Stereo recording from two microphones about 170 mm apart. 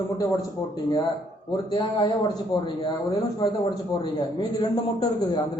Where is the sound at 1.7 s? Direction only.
25° left (ahead or behind).